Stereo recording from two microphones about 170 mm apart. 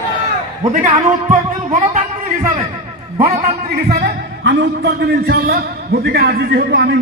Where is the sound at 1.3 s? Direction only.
55° right (ahead or behind).